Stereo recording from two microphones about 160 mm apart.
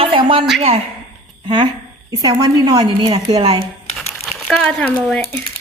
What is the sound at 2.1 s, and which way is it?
A woman's voice, 25° right (ahead or behind).